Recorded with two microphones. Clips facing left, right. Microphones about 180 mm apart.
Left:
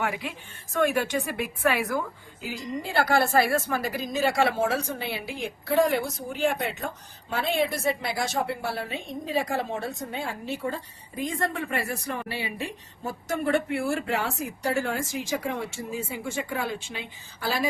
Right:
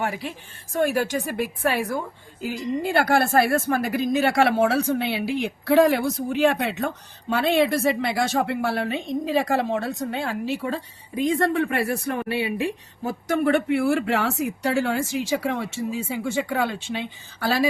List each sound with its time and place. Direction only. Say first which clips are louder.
0.0 s a woman's voice: right 2 dB; 35° right (ahead or behind)
2.4 s a woman's voice: right 7 dB; 50° right (ahead or behind); by 17.7 s 80° right